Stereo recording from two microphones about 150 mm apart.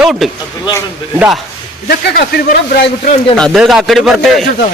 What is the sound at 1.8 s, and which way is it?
Speech, 90° left.